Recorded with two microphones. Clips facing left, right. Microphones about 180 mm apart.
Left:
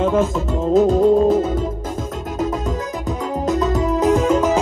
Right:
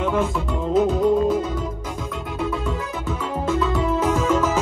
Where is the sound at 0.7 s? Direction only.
45° left (ahead or behind).